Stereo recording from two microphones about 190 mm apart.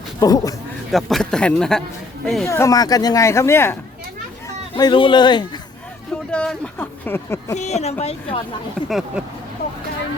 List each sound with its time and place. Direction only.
0.2 s speech: 20° left (ahead or behind)
0.9 s speech: centre (ahead or behind)
2.5 s speech: 15° left (ahead or behind)
4.4 s speech: 25° left (ahead or behind)
6.3 s speech: 5° left (ahead or behind)
7.5 s speech: 35° left (ahead or behind)
8.9 s speech: centre (ahead or behind)